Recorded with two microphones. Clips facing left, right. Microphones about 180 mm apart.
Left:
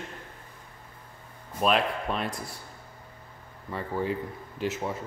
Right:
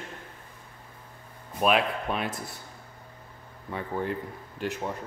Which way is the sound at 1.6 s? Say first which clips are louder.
Right 1 dB; 5° right (ahead or behind).